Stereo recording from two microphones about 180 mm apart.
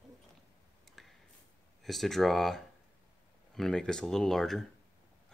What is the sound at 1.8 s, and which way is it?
Speech, centre (ahead or behind).